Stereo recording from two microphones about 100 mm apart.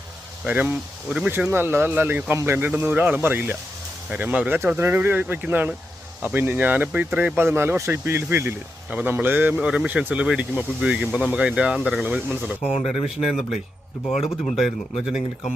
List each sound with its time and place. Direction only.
0.4 s speech: 15° right (ahead or behind)
1.5 s speech: 25° right (ahead or behind); by 12.0 s centre (ahead or behind)
12.0 s speech: 15° right (ahead or behind)
13.1 s speech: 5° right (ahead or behind)